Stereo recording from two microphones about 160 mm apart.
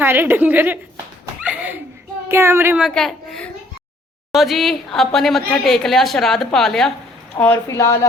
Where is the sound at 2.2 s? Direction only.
15° right (ahead or behind).